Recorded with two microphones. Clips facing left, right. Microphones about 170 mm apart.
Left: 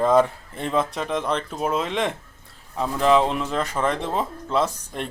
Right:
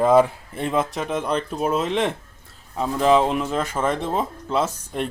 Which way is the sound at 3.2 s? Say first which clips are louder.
Right 2 dB; 10° right (ahead or behind).